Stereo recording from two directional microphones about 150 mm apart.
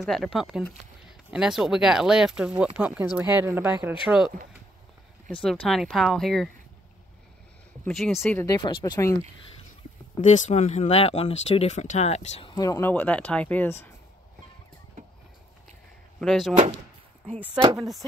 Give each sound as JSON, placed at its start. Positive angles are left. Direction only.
{"t": 0.0, "sound": "speech", "side_deg": 0}
{"t": 4.1, "sound": "speech", "side_deg": 0}
{"t": 5.4, "sound": "speech", "side_deg": 0}
{"t": 7.9, "sound": "speech", "side_deg": 0}
{"t": 8.5, "sound": "speech", "side_deg": 25}
{"t": 10.2, "sound": "speech", "side_deg": 50}
{"t": 12.4, "sound": "speech", "side_deg": 25}
{"t": 16.2, "sound": "speech", "side_deg": 0}
{"t": 17.7, "sound": "speech", "side_deg": 0}